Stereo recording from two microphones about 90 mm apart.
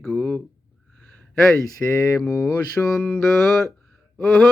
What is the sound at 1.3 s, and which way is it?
Speech, 35° left (ahead or behind).